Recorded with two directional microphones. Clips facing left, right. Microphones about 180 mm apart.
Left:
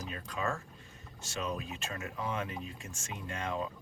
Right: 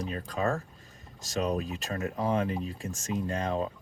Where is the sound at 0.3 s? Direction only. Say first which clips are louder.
Right 6 dB; 40° right (ahead or behind).